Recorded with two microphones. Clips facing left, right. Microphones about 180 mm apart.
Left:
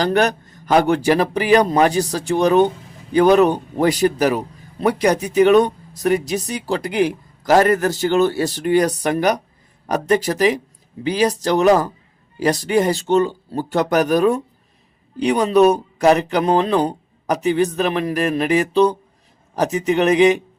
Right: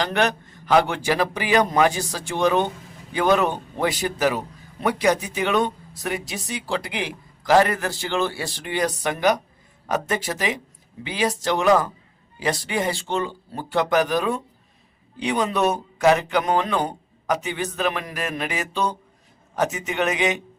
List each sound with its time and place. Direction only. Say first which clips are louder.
0.0 s speech: left 5 dB; 40° left (ahead or behind)